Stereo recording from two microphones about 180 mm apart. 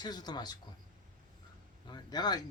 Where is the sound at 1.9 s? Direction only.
25° left (ahead or behind).